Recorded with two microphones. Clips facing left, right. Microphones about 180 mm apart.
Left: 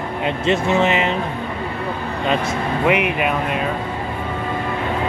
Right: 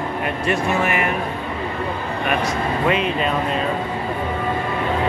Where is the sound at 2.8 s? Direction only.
15° left (ahead or behind).